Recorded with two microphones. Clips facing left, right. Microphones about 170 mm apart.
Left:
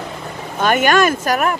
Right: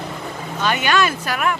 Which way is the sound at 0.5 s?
50° left (ahead or behind).